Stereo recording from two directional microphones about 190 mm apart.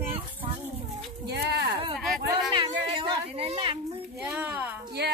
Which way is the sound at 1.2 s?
60° right (ahead or behind).